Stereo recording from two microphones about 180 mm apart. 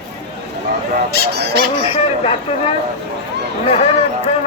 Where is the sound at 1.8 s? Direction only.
35° left (ahead or behind).